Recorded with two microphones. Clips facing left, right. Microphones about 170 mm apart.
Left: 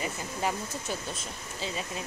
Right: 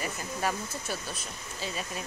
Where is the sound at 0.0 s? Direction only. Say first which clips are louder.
Even; 15° left (ahead or behind).